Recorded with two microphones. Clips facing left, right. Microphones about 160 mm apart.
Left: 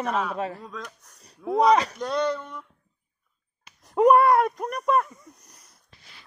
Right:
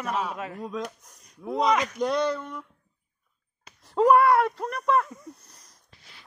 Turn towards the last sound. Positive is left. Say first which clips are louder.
# left 1 dB
turn(degrees=20)  # may be behind; listen again after turning